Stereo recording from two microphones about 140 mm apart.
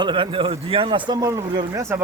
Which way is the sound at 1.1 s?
25° right (ahead or behind).